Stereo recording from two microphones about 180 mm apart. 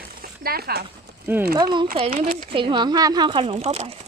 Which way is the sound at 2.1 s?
50° right (ahead or behind).